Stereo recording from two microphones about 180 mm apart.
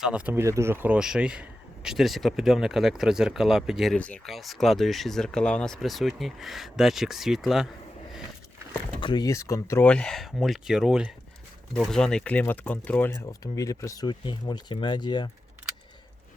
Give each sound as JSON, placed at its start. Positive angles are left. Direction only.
{"t": 0.0, "sound": "a man's voice", "side_deg": -5}
{"t": 9.0, "sound": "a man's voice", "side_deg": 25}